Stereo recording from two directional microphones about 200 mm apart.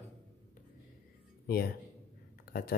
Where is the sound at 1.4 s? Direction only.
50° left (ahead or behind).